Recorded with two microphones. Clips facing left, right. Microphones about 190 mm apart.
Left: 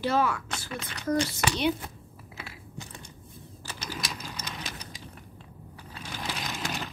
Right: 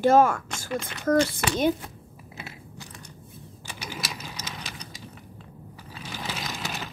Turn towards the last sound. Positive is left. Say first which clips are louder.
# even
turn(degrees=0)  # may be behind; listen again after turning